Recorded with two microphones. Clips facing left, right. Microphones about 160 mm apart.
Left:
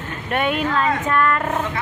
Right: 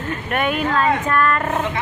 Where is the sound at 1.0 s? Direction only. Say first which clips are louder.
Right 1 dB; 10° left (ahead or behind).